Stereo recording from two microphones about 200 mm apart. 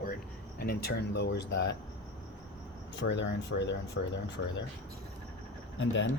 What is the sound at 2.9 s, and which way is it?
Speech, 65° left (ahead or behind).